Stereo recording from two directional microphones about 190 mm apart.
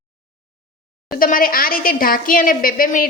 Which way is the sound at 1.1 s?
45° left (ahead or behind).